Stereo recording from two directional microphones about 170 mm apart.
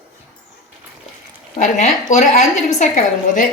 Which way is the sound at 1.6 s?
45° left (ahead or behind).